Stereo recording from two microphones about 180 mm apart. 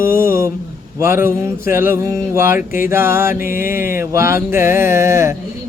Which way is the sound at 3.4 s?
50° left (ahead or behind).